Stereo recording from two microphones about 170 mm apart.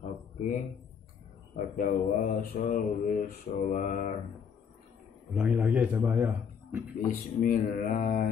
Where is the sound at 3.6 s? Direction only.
50° left (ahead or behind).